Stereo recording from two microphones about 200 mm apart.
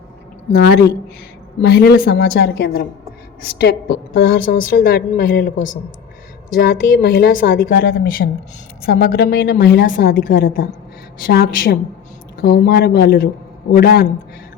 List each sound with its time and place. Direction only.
0.5 s a woman's voice: 50° left (ahead or behind)